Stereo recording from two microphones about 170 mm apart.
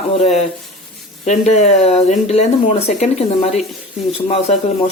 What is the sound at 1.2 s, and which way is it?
Speech, 40° left (ahead or behind).